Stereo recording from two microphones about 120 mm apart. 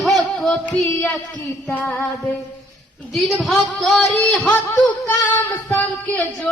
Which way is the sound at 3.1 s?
Centre (ahead or behind).